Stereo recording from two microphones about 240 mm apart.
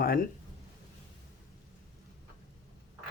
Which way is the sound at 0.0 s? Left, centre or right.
Left.